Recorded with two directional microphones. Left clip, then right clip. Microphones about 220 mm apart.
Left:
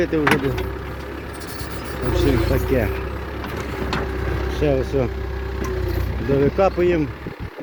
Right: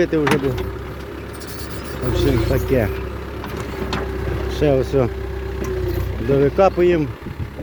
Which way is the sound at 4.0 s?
50° right (ahead or behind).